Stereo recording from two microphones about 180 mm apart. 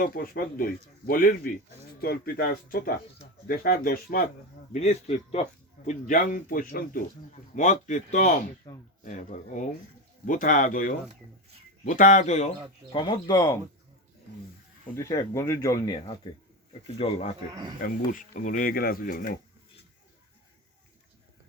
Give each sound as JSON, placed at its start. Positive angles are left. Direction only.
{"t": 0.0, "sound": "speech", "side_deg": 55}
{"t": 4.7, "sound": "speech", "side_deg": 40}
{"t": 8.7, "sound": "speech", "side_deg": 20}
{"t": 9.0, "sound": "speech", "side_deg": 45}
{"t": 14.9, "sound": "speech", "side_deg": 20}
{"t": 17.0, "sound": "speech", "side_deg": 35}
{"t": 17.5, "sound": "speech", "side_deg": -20}
{"t": 17.8, "sound": "speech", "side_deg": 45}